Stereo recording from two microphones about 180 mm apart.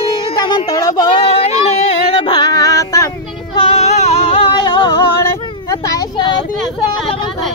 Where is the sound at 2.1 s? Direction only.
25° left (ahead or behind).